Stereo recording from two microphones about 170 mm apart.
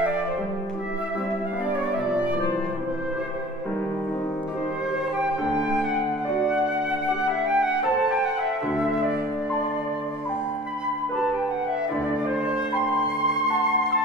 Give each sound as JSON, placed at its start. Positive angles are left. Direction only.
{"t": 7.4, "sound": "music", "side_deg": -5}